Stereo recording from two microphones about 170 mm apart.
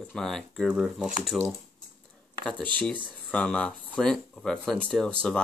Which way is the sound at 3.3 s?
5° left (ahead or behind).